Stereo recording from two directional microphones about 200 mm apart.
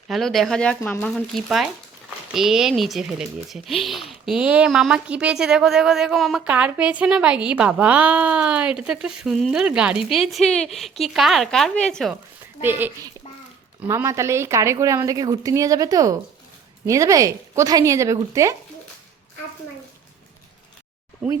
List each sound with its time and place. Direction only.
0.1 s speech: centre (ahead or behind)
12.6 s speech: 10° right (ahead or behind)